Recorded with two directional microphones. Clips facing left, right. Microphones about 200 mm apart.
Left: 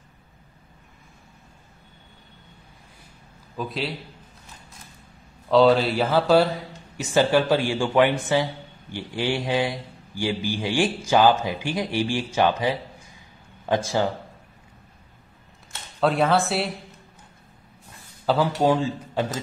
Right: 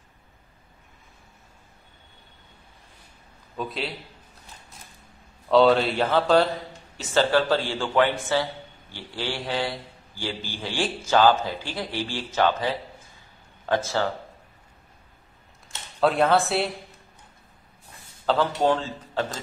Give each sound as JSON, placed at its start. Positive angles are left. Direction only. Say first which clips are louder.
{"t": 3.5, "sound": "speech", "louder": "left 2 dB", "side_deg": 0}
{"t": 5.5, "sound": "a man's voice", "louder": "left 1 dB", "side_deg": 0}
{"t": 16.0, "sound": "speech", "louder": "even", "side_deg": 0}
{"t": 18.2, "sound": "a man's voice", "louder": "left 1 dB", "side_deg": 10}